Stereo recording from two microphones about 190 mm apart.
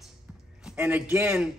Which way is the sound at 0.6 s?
5° right (ahead or behind).